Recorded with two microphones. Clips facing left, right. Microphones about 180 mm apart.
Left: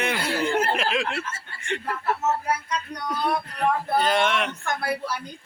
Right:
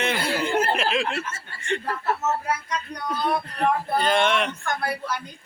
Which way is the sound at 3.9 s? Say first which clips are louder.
Right 1 dB; 5° left (ahead or behind).